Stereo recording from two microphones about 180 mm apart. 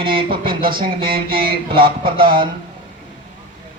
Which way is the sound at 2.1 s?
55° right (ahead or behind).